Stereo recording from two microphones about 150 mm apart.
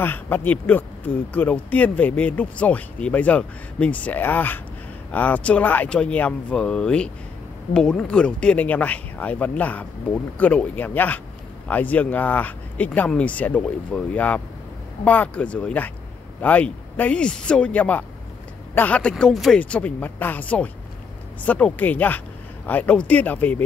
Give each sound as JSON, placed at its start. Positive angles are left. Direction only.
{"t": 0.0, "sound": "speech", "side_deg": 15}